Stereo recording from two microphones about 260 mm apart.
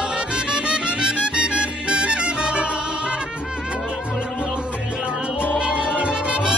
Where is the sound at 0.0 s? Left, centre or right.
Centre.